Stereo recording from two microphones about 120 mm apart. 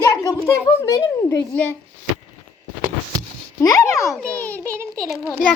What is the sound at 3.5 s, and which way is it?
Speech, 25° left (ahead or behind).